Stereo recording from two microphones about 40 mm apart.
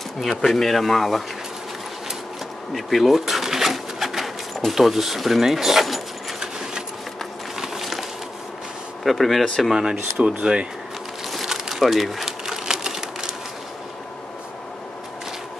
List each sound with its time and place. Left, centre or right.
0.5 s speech: centre
2.7 s sewing machine: centre
7.5 s a sound: centre
9.0 s speech: centre
9.7 s speech: centre
11.3 s pigeon: centre
12.3 s a sound: centre